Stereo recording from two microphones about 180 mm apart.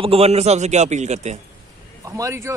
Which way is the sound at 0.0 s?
35° right (ahead or behind).